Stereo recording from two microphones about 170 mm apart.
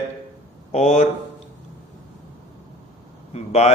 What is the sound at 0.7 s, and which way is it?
Speech, 40° left (ahead or behind).